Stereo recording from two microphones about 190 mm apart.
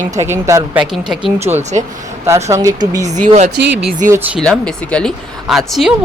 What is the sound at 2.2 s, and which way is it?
Speech, 15° right (ahead or behind).